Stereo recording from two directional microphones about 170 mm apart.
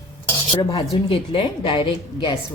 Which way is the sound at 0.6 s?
25° left (ahead or behind).